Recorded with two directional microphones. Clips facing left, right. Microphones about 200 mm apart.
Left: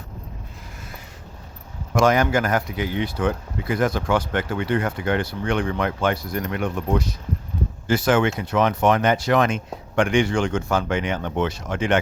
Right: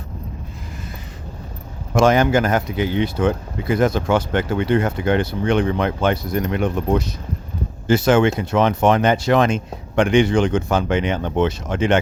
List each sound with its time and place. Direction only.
2.0 s speech: 25° right (ahead or behind)